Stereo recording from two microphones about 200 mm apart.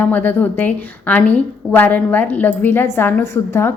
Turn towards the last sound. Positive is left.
turn(degrees=10)  # may be behind; listen again after turning